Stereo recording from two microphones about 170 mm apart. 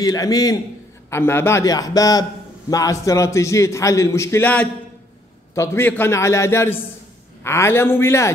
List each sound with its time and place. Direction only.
0.0 s a man's voice: 20° left (ahead or behind)